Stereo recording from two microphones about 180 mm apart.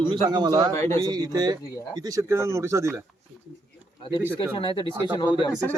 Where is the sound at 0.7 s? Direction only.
15° left (ahead or behind).